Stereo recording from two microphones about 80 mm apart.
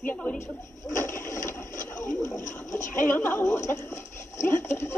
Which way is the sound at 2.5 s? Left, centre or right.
Left.